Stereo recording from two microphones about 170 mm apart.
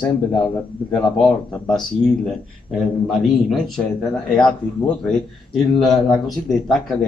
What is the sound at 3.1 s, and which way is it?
Speech, centre (ahead or behind).